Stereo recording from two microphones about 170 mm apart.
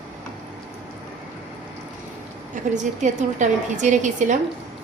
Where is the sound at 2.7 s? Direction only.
45° right (ahead or behind).